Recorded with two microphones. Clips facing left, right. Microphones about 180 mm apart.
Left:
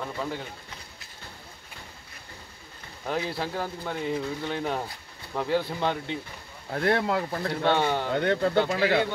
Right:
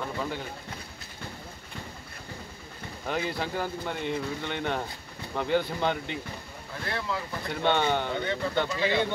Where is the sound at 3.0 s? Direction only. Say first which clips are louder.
Left 1 dB; centre (ahead or behind).